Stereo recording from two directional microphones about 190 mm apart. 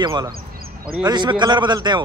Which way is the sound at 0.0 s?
20° right (ahead or behind).